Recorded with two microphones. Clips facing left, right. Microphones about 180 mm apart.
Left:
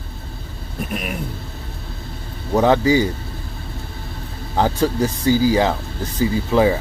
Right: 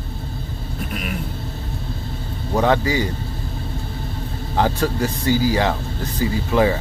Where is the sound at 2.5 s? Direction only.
20° left (ahead or behind).